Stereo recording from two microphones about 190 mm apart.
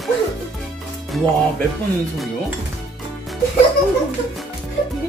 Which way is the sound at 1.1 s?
Centre (ahead or behind).